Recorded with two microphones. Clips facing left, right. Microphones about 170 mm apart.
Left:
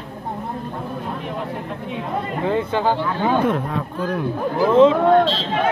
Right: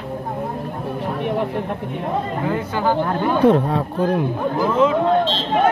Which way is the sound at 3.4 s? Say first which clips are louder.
Right 6 dB; 35° right (ahead or behind).